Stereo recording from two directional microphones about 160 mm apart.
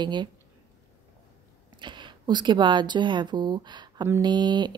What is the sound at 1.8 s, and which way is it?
A woman's voice, 30° right (ahead or behind).